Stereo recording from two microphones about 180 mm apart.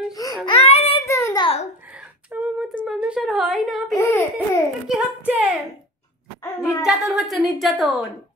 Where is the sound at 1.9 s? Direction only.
5° right (ahead or behind).